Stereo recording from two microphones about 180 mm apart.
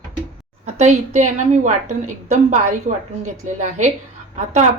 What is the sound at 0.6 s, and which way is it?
Speech, 40° right (ahead or behind).